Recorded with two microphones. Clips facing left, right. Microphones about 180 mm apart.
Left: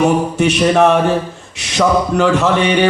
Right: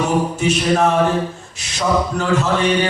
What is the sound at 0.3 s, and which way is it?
A man's voice, 70° left (ahead or behind).